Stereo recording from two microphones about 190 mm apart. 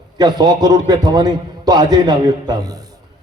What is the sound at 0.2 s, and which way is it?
A man's voice, 20° right (ahead or behind).